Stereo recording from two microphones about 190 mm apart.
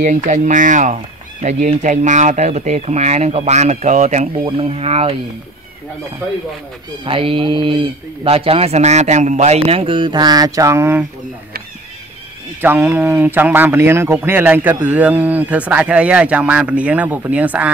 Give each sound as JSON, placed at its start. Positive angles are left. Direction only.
{"t": 0.0, "sound": "speech", "side_deg": -40}
{"t": 7.1, "sound": "speech", "side_deg": -30}
{"t": 12.6, "sound": "a man's voice", "side_deg": -10}